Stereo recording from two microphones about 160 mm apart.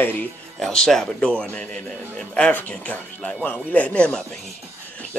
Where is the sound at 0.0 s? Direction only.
10° left (ahead or behind).